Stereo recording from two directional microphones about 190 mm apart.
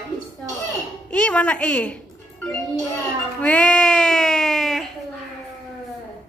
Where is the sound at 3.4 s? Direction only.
5° left (ahead or behind).